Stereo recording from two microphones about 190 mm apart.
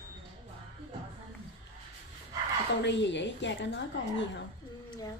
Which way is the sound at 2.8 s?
70° left (ahead or behind).